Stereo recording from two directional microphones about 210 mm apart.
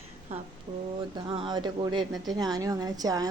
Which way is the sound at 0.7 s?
25° right (ahead or behind).